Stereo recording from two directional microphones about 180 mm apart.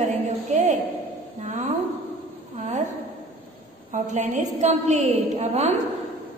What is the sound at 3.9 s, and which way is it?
A woman's voice, 40° right (ahead or behind).